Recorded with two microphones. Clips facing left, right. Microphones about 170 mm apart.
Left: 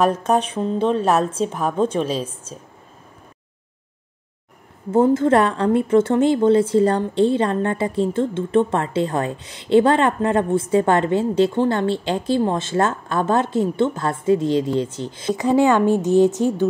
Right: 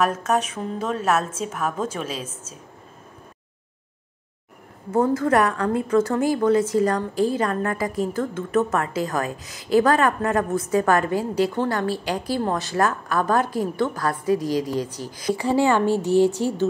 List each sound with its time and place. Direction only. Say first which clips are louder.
0.0 s a woman's voice: left 4 dB; 30° left (ahead or behind)
4.9 s a woman's voice: left 4 dB; 25° left (ahead or behind)